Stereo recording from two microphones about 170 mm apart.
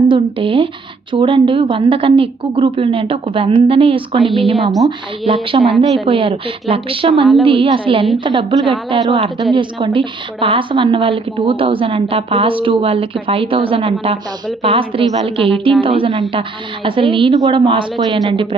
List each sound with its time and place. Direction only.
0.1 s a woman's voice: 30° right (ahead or behind)
4.5 s a woman's voice: centre (ahead or behind)
4.9 s a woman's voice: 30° right (ahead or behind)